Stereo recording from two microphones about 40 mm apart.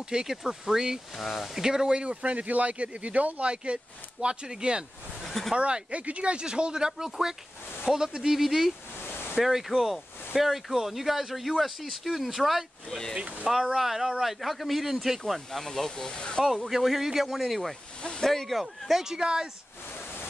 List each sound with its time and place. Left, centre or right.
0.1 s speech: centre
1.1 s speech: centre
1.6 s speech: centre
2.0 s speech: right; by 15.6 s centre
15.6 s speech: centre
16.1 s speech: left
16.5 s speech: centre
18.2 s speech: centre
18.6 s speech: centre
19.1 s speech: centre